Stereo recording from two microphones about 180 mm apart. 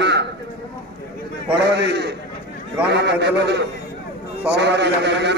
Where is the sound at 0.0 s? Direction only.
75° right (ahead or behind).